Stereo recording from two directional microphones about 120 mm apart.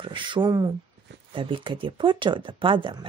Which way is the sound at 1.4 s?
45° right (ahead or behind).